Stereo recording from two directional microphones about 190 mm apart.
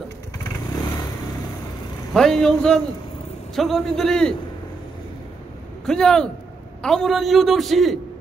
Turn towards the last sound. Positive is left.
turn(degrees=0)  # may be behind; listen again after turning